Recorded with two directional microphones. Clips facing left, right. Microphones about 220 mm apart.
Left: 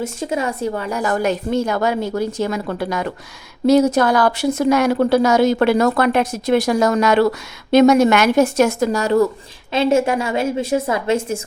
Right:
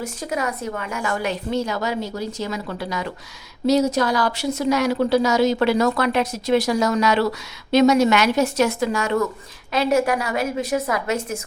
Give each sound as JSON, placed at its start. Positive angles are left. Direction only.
{"t": 0.0, "sound": "speech", "side_deg": 25}
{"t": 9.7, "sound": "a woman's voice", "side_deg": 25}